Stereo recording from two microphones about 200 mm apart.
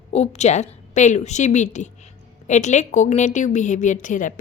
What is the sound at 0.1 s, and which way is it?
A woman's voice, 35° left (ahead or behind).